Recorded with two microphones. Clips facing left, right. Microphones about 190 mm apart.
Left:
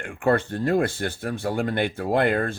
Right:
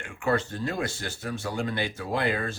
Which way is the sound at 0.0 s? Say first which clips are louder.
Left 5 dB; 55° left (ahead or behind).